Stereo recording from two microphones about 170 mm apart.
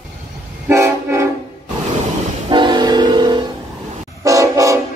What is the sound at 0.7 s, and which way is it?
Vehicle, 15° right (ahead or behind).